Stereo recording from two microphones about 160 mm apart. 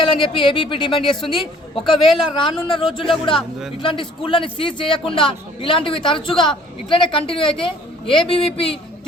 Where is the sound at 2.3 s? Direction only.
30° left (ahead or behind).